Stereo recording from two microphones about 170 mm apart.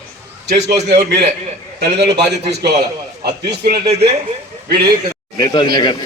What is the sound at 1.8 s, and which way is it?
Speech, 80° right.